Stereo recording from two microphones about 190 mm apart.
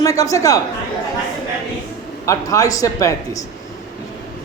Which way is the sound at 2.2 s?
15° left (ahead or behind).